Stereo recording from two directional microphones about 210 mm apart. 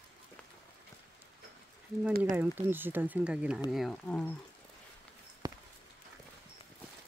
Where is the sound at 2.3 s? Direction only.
10° right (ahead or behind).